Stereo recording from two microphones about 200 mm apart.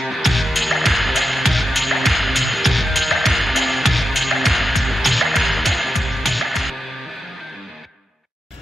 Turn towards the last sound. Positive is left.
turn(degrees=0)  # may be behind; listen again after turning